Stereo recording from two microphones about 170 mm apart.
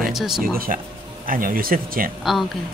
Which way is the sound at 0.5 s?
55° right (ahead or behind).